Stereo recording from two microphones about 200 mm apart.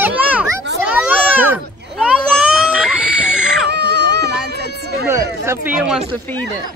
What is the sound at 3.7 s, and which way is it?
Baby cry, 55° right (ahead or behind).